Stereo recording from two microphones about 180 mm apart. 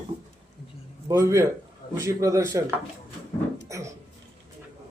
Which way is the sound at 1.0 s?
15° right (ahead or behind).